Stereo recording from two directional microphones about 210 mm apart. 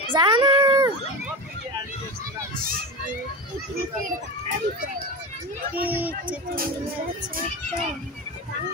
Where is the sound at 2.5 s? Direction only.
45° right (ahead or behind).